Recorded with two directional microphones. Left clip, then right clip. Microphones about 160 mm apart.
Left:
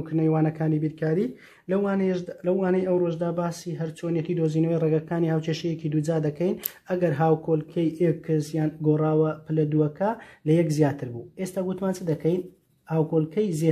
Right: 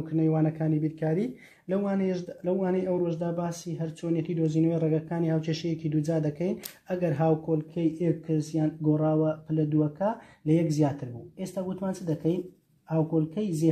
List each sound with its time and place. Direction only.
0.0 s a man's voice: 20° left (ahead or behind)